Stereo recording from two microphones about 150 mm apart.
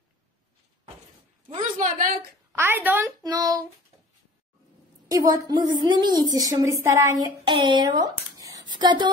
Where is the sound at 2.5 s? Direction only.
15° right (ahead or behind).